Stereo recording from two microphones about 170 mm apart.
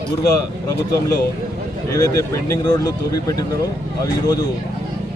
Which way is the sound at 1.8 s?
20° left (ahead or behind).